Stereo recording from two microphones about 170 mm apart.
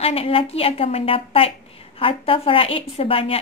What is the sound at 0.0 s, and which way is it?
A woman's voice, 35° left (ahead or behind).